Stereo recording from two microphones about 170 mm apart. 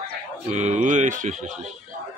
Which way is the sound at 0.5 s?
45° right (ahead or behind).